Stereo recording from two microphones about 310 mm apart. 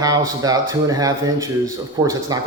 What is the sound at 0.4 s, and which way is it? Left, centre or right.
Speech, centre.